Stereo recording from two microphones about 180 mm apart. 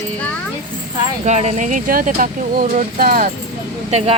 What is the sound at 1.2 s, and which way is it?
Speech, 40° right (ahead or behind).